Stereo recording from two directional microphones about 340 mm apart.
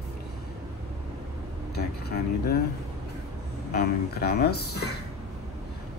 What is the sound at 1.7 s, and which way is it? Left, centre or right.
Mantra, left.